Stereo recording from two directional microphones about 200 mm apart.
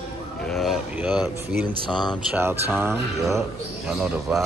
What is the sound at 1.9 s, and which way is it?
Speech, 20° left (ahead or behind).